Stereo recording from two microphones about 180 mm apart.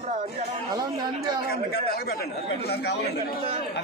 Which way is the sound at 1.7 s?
60° left (ahead or behind).